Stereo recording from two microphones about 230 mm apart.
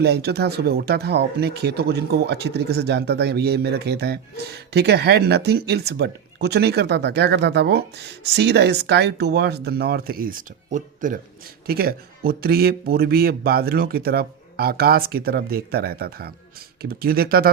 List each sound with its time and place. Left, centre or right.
0.0 s speech: right